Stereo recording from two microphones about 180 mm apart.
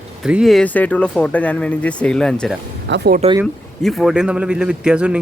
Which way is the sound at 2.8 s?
75° right (ahead or behind).